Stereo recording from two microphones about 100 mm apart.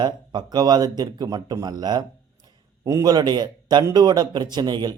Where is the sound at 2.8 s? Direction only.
30° right (ahead or behind).